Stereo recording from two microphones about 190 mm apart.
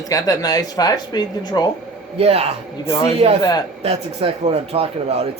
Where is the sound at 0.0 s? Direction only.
20° left (ahead or behind).